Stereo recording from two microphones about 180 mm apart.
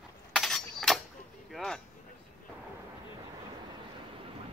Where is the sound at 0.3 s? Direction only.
Centre (ahead or behind).